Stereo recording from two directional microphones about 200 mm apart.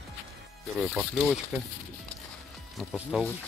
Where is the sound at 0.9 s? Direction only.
5° right (ahead or behind).